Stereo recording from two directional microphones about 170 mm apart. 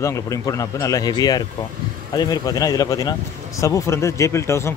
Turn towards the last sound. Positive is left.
turn(degrees=15)  # may be behind; listen again after turning